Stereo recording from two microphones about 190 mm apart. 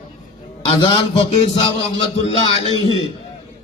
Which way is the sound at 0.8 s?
25° left (ahead or behind).